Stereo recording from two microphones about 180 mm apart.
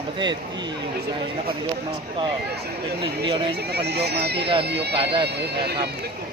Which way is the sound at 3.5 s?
65° right (ahead or behind).